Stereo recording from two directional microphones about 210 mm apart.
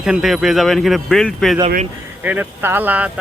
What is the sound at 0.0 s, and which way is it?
Speech, centre (ahead or behind).